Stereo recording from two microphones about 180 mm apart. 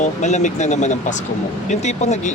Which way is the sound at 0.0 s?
40° left (ahead or behind).